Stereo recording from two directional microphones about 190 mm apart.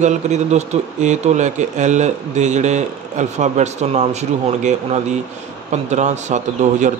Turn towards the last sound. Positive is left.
turn(degrees=-40)  # may be behind; listen again after turning